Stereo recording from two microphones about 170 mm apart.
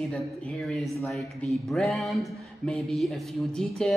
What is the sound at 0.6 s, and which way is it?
A woman's voice, centre (ahead or behind).